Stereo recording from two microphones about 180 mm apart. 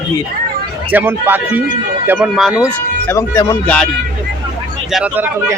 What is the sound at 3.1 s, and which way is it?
Speech, 15° left (ahead or behind).